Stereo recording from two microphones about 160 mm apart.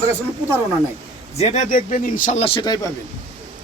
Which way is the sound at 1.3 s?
45° left (ahead or behind).